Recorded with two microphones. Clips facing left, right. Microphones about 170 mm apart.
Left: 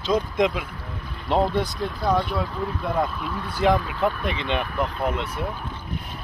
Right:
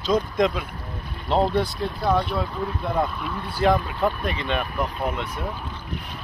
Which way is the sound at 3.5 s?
20° left (ahead or behind).